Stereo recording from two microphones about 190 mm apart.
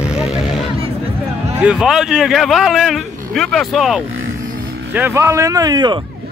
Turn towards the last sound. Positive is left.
turn(degrees=-20)  # may be behind; listen again after turning